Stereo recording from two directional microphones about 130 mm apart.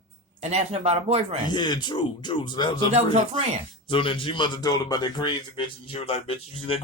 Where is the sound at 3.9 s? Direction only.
40° left (ahead or behind).